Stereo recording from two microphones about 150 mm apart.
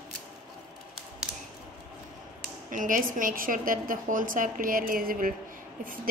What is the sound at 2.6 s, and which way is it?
A woman's voice, 60° right (ahead or behind).